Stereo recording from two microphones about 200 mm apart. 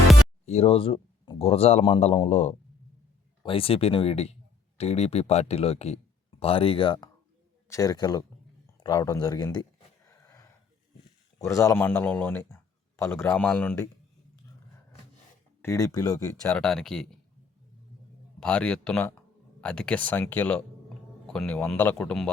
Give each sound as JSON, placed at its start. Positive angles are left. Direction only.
{"t": 0.4, "sound": "speech", "side_deg": 30}
{"t": 8.6, "sound": "a sound", "side_deg": 20}
{"t": 9.2, "sound": "speech", "side_deg": 20}
{"t": 10.1, "sound": "a sound", "side_deg": 15}
{"t": 11.3, "sound": "speech", "side_deg": 15}
{"t": 15.6, "sound": "speech", "side_deg": 15}
{"t": 16.4, "sound": "speech", "side_deg": 5}
{"t": 18.3, "sound": "speech", "side_deg": 5}